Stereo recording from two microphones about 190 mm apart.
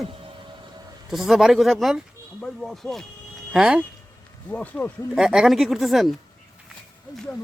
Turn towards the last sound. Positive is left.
turn(degrees=0)  # may be behind; listen again after turning